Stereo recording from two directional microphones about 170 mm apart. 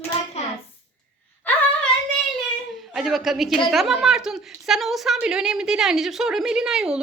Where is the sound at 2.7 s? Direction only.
Centre (ahead or behind).